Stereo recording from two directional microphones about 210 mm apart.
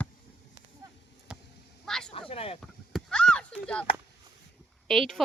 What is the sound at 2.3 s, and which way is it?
Speech, 25° left (ahead or behind).